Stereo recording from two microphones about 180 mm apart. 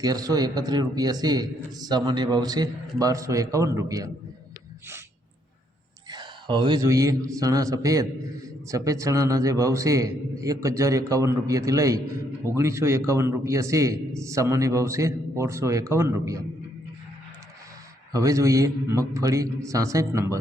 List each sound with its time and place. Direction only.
0.0 s a man's voice: 20° right (ahead or behind)
6.1 s a man's voice: 25° right (ahead or behind)
18.1 s a man's voice: 20° right (ahead or behind)